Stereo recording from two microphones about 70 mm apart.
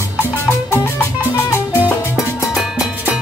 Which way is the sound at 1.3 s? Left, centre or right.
Left.